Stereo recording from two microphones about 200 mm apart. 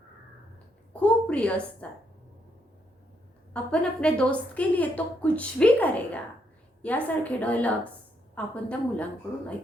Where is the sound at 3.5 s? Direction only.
5° left (ahead or behind).